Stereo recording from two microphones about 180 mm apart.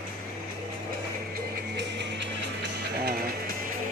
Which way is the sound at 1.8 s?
75° right (ahead or behind).